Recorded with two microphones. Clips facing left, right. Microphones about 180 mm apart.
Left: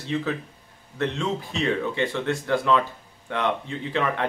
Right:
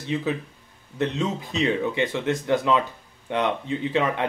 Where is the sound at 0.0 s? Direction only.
20° right (ahead or behind).